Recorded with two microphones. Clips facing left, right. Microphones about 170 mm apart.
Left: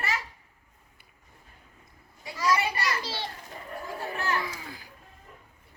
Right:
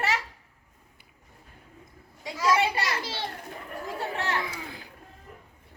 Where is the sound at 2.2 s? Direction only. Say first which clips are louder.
Right 2 dB; 90° right.